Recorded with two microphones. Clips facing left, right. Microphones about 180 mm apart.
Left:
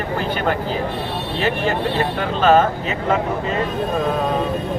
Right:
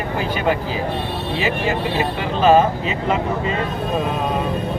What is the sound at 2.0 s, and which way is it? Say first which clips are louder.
Speech: right 2 dB; 10° right (ahead or behind).